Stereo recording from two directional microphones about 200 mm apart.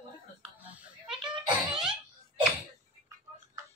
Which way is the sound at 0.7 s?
5° right (ahead or behind).